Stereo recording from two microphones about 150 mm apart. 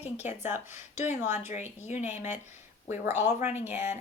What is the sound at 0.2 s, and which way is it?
Speech, 15° right (ahead or behind).